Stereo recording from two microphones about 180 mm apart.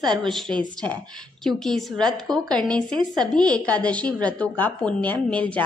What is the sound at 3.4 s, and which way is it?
A woman's voice, 5° left (ahead or behind).